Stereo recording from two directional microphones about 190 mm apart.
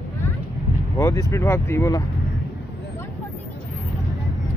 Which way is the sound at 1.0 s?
15° left (ahead or behind).